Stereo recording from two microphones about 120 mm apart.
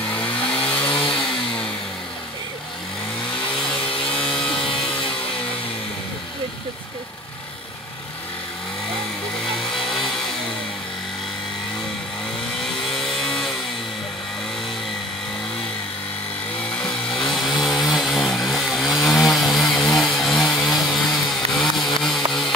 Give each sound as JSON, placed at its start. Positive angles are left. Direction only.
{"t": 0.1, "sound": "vehicle", "side_deg": 10}
{"t": 0.8, "sound": "chainsaw", "side_deg": 45}
{"t": 1.1, "sound": "vehicle", "side_deg": 5}
{"t": 3.9, "sound": "a sound", "side_deg": 45}
{"t": 4.6, "sound": "music", "side_deg": 45}
{"t": 9.4, "sound": "a sound", "side_deg": 0}
{"t": 12.6, "sound": "vehicle", "side_deg": 5}
{"t": 16.7, "sound": "chainsaw", "side_deg": 10}
{"t": 19.7, "sound": "a sound", "side_deg": 5}
{"t": 20.3, "sound": "vehicle", "side_deg": 5}